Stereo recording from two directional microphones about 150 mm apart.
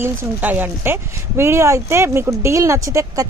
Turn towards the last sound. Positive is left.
turn(degrees=-20)  # may be behind; listen again after turning